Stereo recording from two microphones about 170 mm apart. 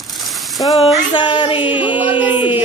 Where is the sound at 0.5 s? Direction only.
25° left (ahead or behind).